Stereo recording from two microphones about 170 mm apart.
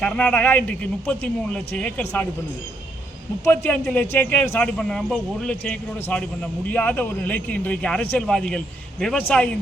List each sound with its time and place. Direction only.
0.0 s speech: 5° left (ahead or behind)
3.4 s a man's voice: 10° left (ahead or behind)